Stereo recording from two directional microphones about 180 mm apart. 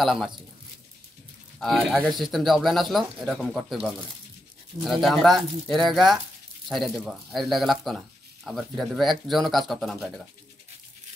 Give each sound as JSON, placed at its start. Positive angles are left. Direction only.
{"t": 0.0, "sound": "speech", "side_deg": 0}
{"t": 1.6, "sound": "speech", "side_deg": 0}